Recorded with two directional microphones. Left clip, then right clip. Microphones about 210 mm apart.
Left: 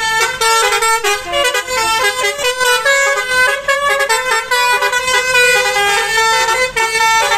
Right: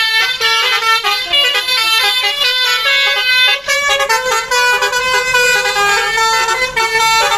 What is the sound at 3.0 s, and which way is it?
Vehicle, 30° left (ahead or behind).